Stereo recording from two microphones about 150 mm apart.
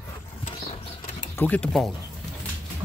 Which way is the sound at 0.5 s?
40° left (ahead or behind).